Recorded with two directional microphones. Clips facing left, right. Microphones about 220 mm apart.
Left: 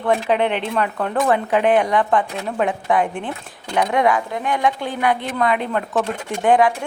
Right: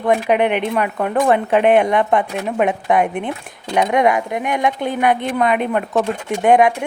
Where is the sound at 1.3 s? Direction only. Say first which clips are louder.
Right 3 dB; 25° right (ahead or behind).